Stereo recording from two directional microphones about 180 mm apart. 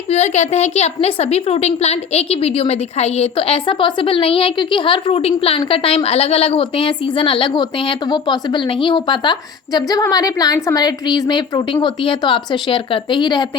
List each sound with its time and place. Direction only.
0.1 s a woman's voice: 35° left (ahead or behind)